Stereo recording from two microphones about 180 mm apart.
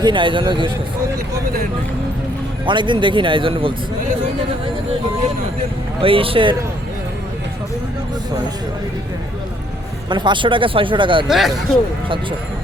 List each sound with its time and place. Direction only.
0.0 s speech: 25° right (ahead or behind)
2.6 s speech: 25° right (ahead or behind)
6.0 s speech: 30° right (ahead or behind)
10.1 s speech: 25° right (ahead or behind)
11.3 s a man's voice: centre (ahead or behind)